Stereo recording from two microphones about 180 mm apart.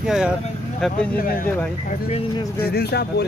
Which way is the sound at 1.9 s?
35° left (ahead or behind).